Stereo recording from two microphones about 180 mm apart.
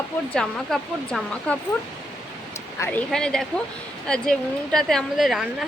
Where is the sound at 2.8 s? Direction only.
5° left (ahead or behind).